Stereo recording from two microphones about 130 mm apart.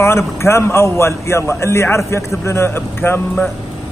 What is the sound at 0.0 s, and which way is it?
A man's voice, 20° left (ahead or behind).